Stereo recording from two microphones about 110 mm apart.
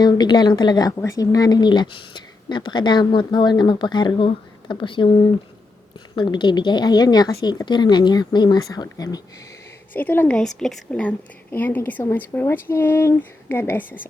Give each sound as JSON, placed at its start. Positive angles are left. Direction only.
{"t": 0.0, "sound": "speech", "side_deg": 40}
{"t": 6.1, "sound": "speech", "side_deg": 45}
{"t": 9.9, "sound": "a woman's voice", "side_deg": 15}
{"t": 10.3, "sound": "a woman's voice", "side_deg": 5}
{"t": 11.5, "sound": "speech", "side_deg": 15}